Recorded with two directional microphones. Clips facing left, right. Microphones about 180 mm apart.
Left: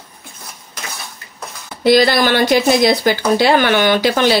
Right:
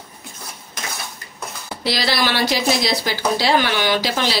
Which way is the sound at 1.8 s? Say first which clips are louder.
Left 10 dB; 50° left (ahead or behind).